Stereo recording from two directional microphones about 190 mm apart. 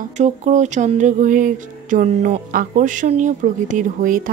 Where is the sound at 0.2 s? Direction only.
40° right (ahead or behind).